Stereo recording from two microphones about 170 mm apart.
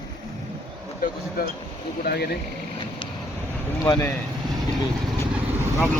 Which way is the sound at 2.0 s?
70° left (ahead or behind).